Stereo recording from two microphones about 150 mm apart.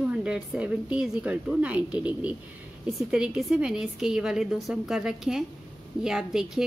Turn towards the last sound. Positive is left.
turn(degrees=-5)  # may be behind; listen again after turning